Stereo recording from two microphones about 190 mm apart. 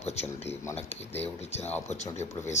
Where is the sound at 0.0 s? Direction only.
35° left (ahead or behind).